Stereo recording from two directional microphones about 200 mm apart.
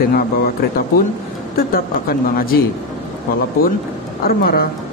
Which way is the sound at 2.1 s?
45° left (ahead or behind).